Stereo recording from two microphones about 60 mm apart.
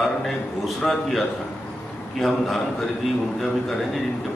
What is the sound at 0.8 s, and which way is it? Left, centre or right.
Speech, centre.